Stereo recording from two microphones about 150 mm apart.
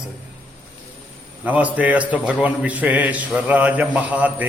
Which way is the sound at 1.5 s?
10° right (ahead or behind).